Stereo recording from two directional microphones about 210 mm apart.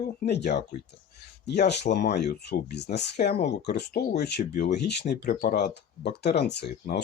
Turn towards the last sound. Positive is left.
turn(degrees=50)  # may be behind; listen again after turning